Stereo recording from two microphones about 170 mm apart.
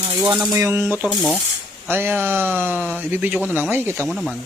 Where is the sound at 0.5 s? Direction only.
15° right (ahead or behind).